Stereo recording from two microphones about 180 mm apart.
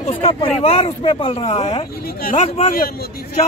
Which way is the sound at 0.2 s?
35° left (ahead or behind).